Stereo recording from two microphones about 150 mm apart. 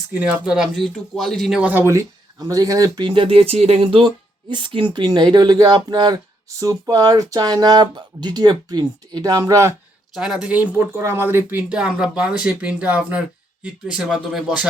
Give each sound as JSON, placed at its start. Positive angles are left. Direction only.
{"t": 0.1, "sound": "speech", "side_deg": -10}
{"t": 10.2, "sound": "speech", "side_deg": -5}